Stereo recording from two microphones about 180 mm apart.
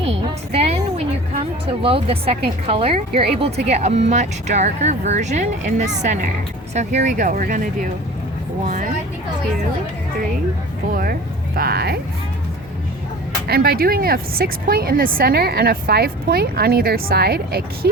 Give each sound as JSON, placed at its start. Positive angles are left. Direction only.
{"t": 0.0, "sound": "a woman's voice", "side_deg": -35}
{"t": 10.9, "sound": "speech", "side_deg": -55}
{"t": 13.5, "sound": "a woman's voice", "side_deg": -60}